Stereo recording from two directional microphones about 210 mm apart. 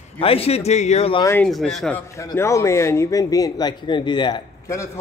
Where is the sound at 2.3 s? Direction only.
15° left (ahead or behind).